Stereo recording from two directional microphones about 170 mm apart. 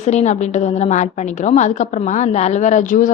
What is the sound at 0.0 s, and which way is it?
A woman's voice, 40° left (ahead or behind).